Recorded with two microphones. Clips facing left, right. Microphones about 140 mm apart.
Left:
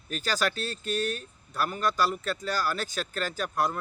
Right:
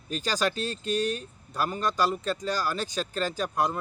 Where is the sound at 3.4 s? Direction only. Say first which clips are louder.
Even; 15° right (ahead or behind).